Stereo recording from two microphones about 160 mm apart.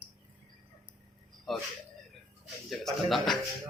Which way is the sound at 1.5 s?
Centre (ahead or behind).